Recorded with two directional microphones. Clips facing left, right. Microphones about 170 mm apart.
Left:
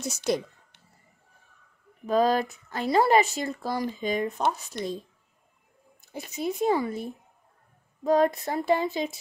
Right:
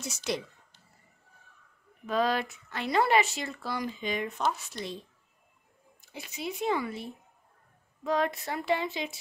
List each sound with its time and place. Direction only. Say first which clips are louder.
0.0 s speech: left 6 dB; 45° left (ahead or behind)
2.0 s speech: left 5 dB; 40° left (ahead or behind)
6.1 s speech: left 7 dB; 45° left (ahead or behind)